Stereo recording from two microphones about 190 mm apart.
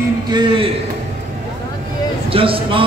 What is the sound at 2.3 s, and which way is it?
Speech, 30° right (ahead or behind).